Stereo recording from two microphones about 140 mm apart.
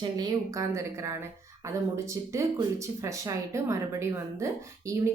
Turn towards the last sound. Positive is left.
turn(degrees=-20)  # may be behind; listen again after turning